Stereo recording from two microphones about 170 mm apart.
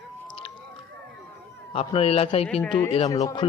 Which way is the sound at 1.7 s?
35° left (ahead or behind).